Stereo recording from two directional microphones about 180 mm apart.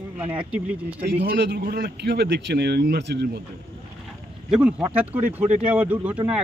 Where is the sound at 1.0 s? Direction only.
60° right (ahead or behind).